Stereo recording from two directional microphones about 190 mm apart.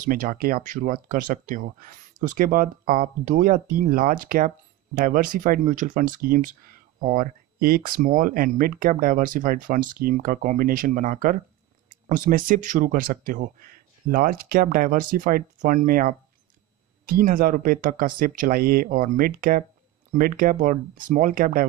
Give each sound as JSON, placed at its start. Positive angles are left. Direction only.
{"t": 0.0, "sound": "speech", "side_deg": -45}